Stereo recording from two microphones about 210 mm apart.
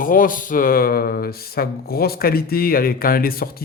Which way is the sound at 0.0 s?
40° left (ahead or behind).